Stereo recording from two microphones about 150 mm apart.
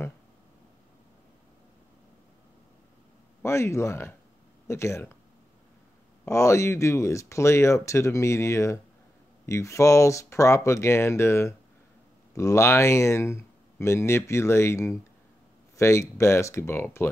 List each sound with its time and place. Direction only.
3.4 s speech: 20° left (ahead or behind)
6.2 s speech: 20° left (ahead or behind)